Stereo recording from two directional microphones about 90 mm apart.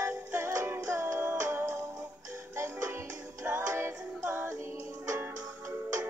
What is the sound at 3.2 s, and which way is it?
Music, 15° right (ahead or behind).